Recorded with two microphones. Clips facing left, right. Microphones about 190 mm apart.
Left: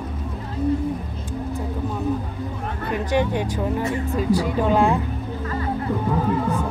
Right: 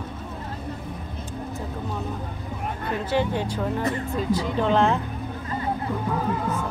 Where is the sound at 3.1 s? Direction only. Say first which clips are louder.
Left 2 dB; 15° left (ahead or behind).